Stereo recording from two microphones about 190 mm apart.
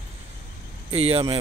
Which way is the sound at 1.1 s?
30° right (ahead or behind).